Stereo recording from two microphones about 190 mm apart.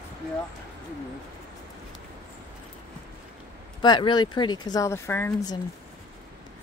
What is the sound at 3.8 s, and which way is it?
Speech, 25° left (ahead or behind).